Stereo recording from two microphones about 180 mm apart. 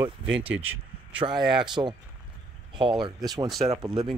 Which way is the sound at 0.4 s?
10° right (ahead or behind).